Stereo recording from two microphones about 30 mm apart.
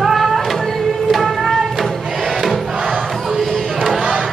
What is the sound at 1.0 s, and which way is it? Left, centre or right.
Music, centre.